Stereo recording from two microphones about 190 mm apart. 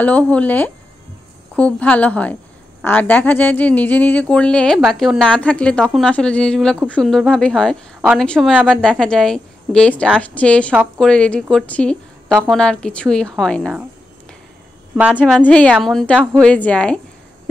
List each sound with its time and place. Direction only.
0.0 s speech: 5° left (ahead or behind)
5.8 s speech: 5° right (ahead or behind)
6.0 s speech: 5° left (ahead or behind)
15.1 s speech: 5° left (ahead or behind)